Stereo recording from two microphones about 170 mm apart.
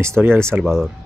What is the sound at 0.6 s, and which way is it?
Speech, centre (ahead or behind).